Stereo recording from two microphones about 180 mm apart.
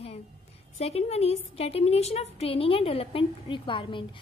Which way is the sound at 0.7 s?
35° left (ahead or behind).